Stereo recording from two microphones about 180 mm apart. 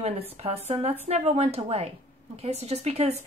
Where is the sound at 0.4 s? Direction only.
35° right (ahead or behind).